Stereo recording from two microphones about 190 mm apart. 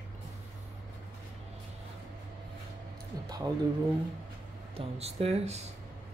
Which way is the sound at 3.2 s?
20° right (ahead or behind).